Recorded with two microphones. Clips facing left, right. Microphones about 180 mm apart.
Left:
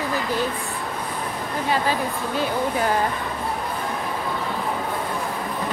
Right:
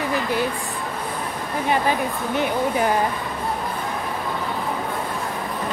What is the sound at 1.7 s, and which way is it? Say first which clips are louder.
Speech: right 2 dB; 20° right (ahead or behind).